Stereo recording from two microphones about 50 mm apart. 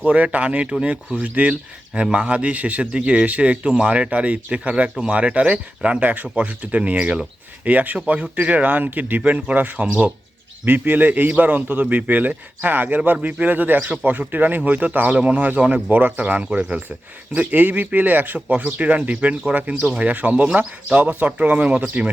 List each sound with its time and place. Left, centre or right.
0.0 s a man's voice: right
1.2 s a man's voice: right
16.2 s a man's voice: right
18.6 s a man's voice: right